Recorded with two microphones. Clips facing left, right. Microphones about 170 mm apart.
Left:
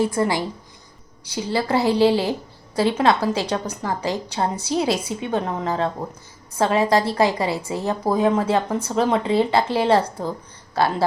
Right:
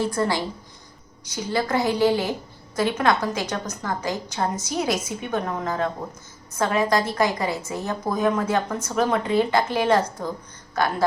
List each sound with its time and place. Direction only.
0.1 s speech: 20° left (ahead or behind)
1.5 s a woman's voice: 30° left (ahead or behind)